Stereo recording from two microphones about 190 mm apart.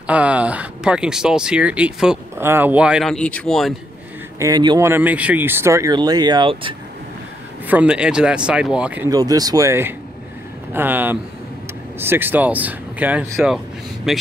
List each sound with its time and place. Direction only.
0.0 s speech: 5° right (ahead or behind)
4.4 s speech: 20° right (ahead or behind)
7.6 s speech: 10° right (ahead or behind)
9.1 s speech: 20° right (ahead or behind); by 14.2 s centre (ahead or behind)